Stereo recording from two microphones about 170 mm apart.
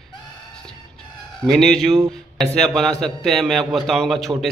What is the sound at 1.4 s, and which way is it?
A man's voice, centre (ahead or behind).